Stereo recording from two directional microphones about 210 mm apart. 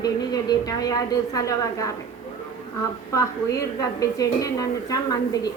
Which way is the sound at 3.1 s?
15° left (ahead or behind).